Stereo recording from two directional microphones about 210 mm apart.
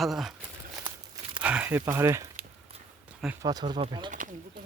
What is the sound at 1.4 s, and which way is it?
Speech, 5° right (ahead or behind).